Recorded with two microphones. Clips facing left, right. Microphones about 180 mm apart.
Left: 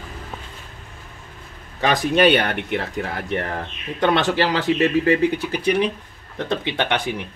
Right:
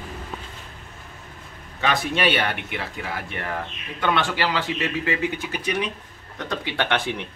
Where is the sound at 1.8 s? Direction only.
40° left (ahead or behind); by 7.3 s 10° left (ahead or behind).